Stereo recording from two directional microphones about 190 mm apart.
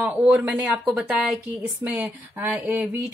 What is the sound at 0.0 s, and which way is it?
A woman's voice, 10° right (ahead or behind).